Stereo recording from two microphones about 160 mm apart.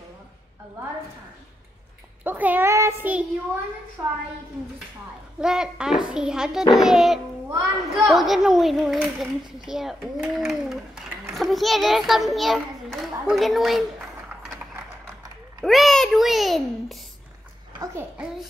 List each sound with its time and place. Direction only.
2.2 s a child's voice: 10° right (ahead or behind)
5.4 s a child's voice: 5° right (ahead or behind)
15.6 s a child's voice: centre (ahead or behind)